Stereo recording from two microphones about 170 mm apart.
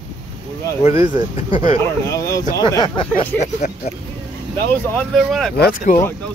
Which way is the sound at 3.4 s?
45° left (ahead or behind).